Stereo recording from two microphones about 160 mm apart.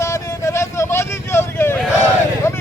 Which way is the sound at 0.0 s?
20° left (ahead or behind).